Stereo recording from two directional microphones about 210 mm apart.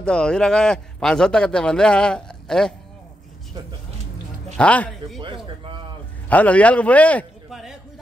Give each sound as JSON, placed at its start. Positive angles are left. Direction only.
{"t": 0.0, "sound": "a man's voice", "side_deg": 5}
{"t": 4.6, "sound": "a man's voice", "side_deg": 5}
{"t": 5.2, "sound": "speech", "side_deg": -25}
{"t": 6.2, "sound": "a man's voice", "side_deg": 5}